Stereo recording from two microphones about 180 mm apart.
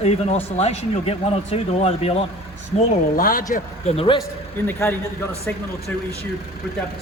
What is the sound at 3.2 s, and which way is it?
Speech, 50° left (ahead or behind).